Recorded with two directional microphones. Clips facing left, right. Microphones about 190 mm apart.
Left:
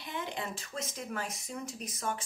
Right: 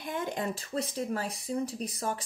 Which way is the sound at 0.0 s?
45° right (ahead or behind).